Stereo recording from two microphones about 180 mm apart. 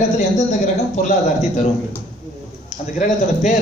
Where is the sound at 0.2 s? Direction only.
45° left (ahead or behind).